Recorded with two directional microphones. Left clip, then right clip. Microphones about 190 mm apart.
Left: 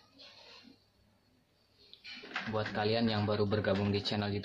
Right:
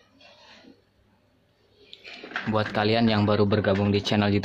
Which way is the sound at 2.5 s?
40° right (ahead or behind).